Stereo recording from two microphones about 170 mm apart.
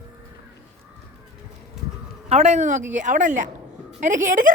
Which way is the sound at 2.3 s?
40° right (ahead or behind).